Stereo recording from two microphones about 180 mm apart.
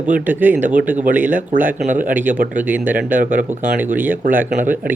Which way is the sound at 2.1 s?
10° right (ahead or behind).